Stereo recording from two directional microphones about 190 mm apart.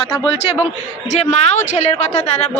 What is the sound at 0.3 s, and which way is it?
A man's voice, 30° left (ahead or behind).